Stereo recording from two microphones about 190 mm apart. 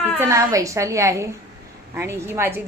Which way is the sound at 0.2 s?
15° right (ahead or behind).